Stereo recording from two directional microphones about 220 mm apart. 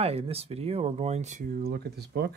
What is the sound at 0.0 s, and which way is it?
Speech, 25° right (ahead or behind).